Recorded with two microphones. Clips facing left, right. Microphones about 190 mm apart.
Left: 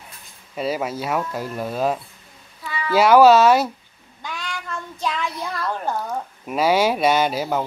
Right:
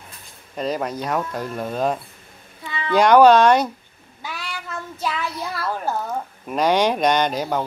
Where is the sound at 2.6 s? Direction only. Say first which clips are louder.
Left 1 dB; 25° right (ahead or behind).